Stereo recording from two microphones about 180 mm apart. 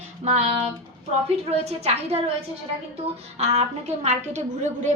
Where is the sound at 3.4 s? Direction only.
35° right (ahead or behind).